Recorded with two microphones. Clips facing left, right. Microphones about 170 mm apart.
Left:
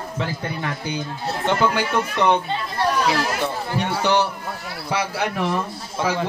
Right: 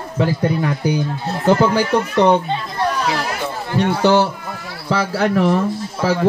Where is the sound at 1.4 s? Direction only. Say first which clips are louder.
Right 6 dB; 40° right (ahead or behind).